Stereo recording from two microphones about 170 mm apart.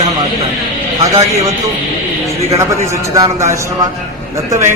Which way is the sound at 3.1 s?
20° right (ahead or behind).